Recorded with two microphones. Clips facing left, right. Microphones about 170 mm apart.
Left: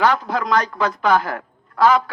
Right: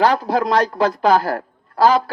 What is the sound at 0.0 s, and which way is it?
A man's voice, 35° right (ahead or behind).